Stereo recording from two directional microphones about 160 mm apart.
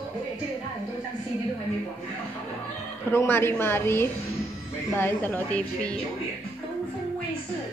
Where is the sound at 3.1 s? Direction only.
15° left (ahead or behind).